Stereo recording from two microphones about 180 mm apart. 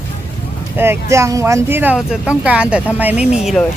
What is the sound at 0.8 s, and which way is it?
Speech, 15° right (ahead or behind).